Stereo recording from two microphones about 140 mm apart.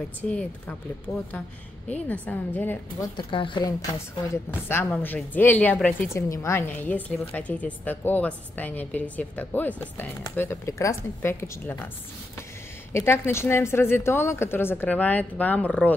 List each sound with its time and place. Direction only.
0.2 s a woman's voice: 10° left (ahead or behind)
3.2 s a woman's voice: 35° left (ahead or behind)
4.5 s a woman's voice: 15° left (ahead or behind)
6.1 s a woman's voice: 20° left (ahead or behind)
12.9 s a woman's voice: 20° left (ahead or behind)